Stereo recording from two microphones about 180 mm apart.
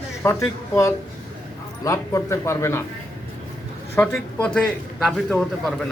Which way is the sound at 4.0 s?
5° left (ahead or behind).